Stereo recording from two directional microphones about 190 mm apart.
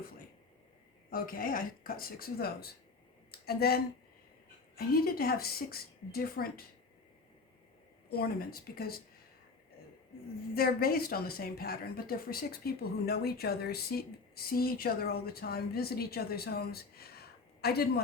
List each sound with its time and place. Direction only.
1.1 s speech: 50° left (ahead or behind)
4.8 s speech: 50° left (ahead or behind)
8.1 s speech: 55° left (ahead or behind)
10.5 s a woman's voice: 50° left (ahead or behind)